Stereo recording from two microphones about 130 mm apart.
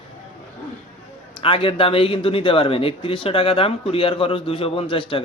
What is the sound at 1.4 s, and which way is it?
Speech, 45° left (ahead or behind).